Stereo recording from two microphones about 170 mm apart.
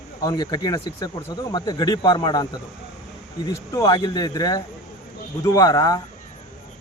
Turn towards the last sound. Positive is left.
turn(degrees=20)  # may be behind; listen again after turning